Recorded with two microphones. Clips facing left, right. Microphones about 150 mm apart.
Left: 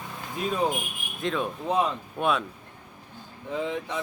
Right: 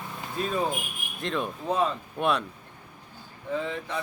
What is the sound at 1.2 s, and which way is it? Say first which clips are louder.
Speech: left 2 dB; centre (ahead or behind).